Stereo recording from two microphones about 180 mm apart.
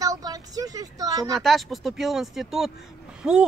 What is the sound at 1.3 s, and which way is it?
Speech, centre (ahead or behind).